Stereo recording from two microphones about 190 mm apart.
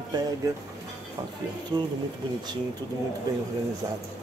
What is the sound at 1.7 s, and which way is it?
Speech, 20° right (ahead or behind).